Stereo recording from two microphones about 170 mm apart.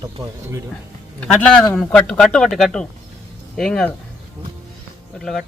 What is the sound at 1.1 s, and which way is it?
A man's voice, 5° left (ahead or behind).